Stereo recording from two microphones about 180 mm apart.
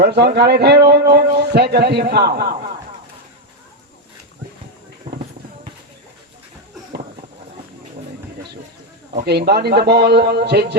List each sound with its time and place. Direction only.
0.0 s speech: 65° right (ahead or behind)
5.1 s a sound: 30° right (ahead or behind)
9.1 s speech: 60° right (ahead or behind)